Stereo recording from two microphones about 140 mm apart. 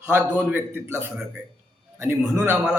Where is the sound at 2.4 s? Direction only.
15° right (ahead or behind).